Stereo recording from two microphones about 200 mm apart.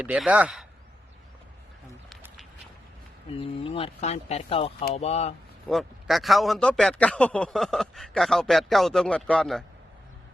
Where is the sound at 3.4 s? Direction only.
25° left (ahead or behind).